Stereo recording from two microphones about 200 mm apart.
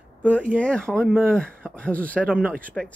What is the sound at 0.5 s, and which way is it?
Speech, 5° left (ahead or behind).